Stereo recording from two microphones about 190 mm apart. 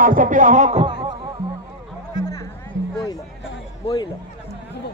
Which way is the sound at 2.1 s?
20° left (ahead or behind).